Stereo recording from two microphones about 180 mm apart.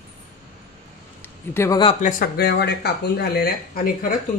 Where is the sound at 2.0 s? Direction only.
55° left (ahead or behind).